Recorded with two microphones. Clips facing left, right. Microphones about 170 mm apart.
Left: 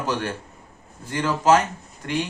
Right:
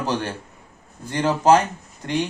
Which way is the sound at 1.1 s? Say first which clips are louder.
Right 2 dB; 35° right (ahead or behind).